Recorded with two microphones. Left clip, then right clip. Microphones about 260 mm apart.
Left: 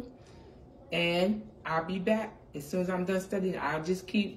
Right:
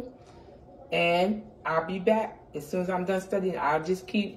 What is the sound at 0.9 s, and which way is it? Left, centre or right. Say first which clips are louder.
Speech: right 4 dB; centre.